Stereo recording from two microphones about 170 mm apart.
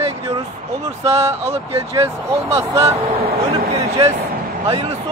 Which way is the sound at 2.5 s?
15° right (ahead or behind).